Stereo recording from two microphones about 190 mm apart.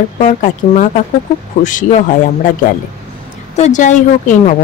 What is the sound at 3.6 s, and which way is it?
Speech, 40° left (ahead or behind).